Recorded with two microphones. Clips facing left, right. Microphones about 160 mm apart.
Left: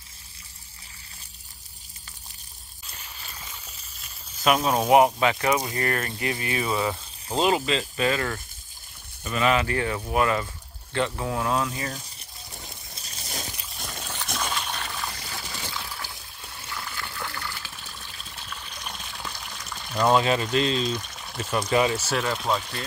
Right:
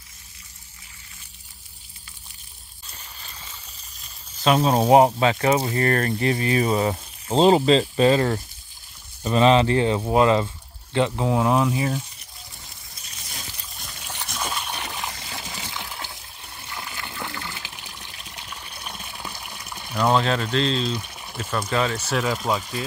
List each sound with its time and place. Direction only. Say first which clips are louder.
4.5 s speech: right 3 dB; 30° right (ahead or behind); by 12.0 s 15° right (ahead or behind)
12.2 s a sound: left 3 dB; 30° left (ahead or behind); by 14.0 s 50° left (ahead or behind)
14.4 s a sound: right 2 dB; 10° right (ahead or behind)
16.7 s water: right 1 dB; 20° right (ahead or behind)
20.1 s speech: even; 10° left (ahead or behind)
20.9 s pour: right 1 dB; 10° right (ahead or behind)
21.7 s speech: left 1 dB; 5° left (ahead or behind)